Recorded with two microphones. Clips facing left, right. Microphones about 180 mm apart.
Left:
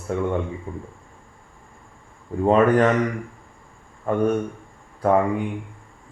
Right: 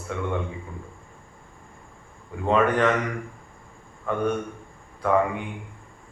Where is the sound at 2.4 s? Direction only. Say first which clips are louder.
Left 4 dB; 40° left (ahead or behind).